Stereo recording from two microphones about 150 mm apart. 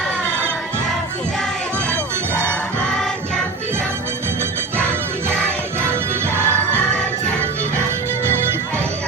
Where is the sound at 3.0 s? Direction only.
Centre (ahead or behind).